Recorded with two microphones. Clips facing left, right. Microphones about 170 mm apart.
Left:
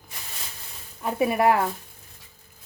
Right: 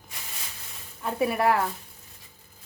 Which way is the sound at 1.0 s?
15° left (ahead or behind).